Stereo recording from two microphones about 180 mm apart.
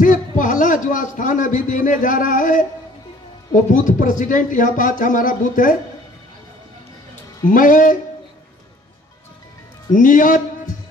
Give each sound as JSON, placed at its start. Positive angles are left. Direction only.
{"t": 0.0, "sound": "a man's voice", "side_deg": 45}
{"t": 7.5, "sound": "speech", "side_deg": 50}
{"t": 9.9, "sound": "speech", "side_deg": 45}